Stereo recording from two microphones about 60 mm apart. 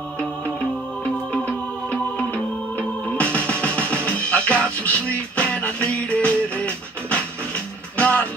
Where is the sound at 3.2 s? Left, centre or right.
Left.